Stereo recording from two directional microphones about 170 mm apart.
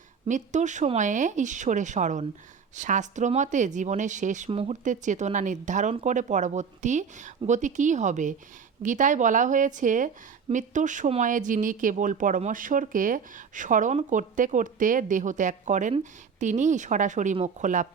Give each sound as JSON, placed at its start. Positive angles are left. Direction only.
{"t": 0.3, "sound": "speech", "side_deg": -45}